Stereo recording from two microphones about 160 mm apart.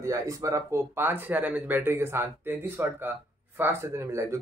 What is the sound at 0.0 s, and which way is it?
Speech, 20° right (ahead or behind).